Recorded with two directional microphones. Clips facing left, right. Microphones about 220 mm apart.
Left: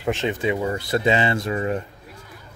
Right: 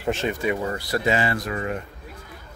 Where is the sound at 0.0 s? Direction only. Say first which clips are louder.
Left 1 dB; 15° left (ahead or behind).